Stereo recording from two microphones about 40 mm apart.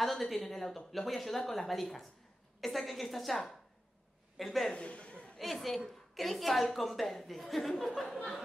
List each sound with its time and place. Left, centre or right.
0.0 s a woman's voice: centre
4.7 s chuckle: left
5.4 s a woman's voice: centre